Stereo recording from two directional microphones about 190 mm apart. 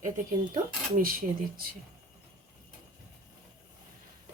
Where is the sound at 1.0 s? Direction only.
50° right (ahead or behind).